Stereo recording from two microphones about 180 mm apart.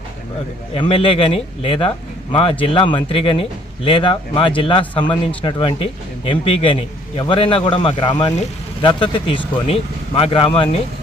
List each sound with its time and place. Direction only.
0.7 s speech: 30° left (ahead or behind)